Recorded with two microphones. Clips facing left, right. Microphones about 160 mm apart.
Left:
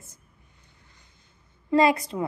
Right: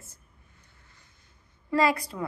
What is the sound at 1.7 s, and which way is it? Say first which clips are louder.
Speech: left 4 dB; 20° left (ahead or behind).